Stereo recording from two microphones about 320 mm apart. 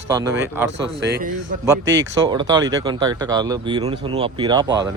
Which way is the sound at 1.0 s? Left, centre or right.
Right.